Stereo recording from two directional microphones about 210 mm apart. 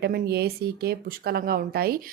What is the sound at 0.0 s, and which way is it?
A woman's voice, 50° right (ahead or behind).